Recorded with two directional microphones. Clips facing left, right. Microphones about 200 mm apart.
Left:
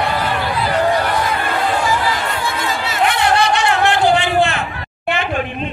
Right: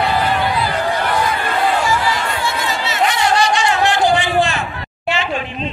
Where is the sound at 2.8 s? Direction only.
60° left (ahead or behind).